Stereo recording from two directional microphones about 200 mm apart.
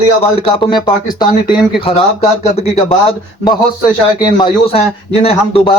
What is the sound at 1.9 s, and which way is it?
Speech, 30° left (ahead or behind).